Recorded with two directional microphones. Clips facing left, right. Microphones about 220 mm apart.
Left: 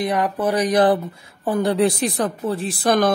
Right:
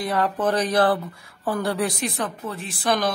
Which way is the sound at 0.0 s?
15° left (ahead or behind).